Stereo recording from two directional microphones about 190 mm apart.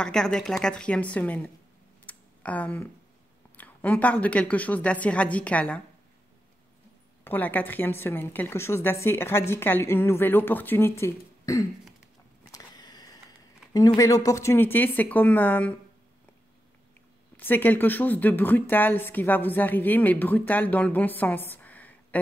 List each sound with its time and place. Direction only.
0.0 s a woman's voice: 5° left (ahead or behind)
2.0 s a sound: 10° left (ahead or behind)
3.5 s speech: 10° left (ahead or behind)
7.2 s speech: 10° left (ahead or behind)
12.4 s a sound: 20° left (ahead or behind)
13.7 s speech: 20° left (ahead or behind)
17.4 s speech: 10° left (ahead or behind)